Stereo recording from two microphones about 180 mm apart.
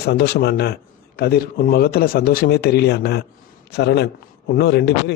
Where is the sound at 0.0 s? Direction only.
65° left (ahead or behind).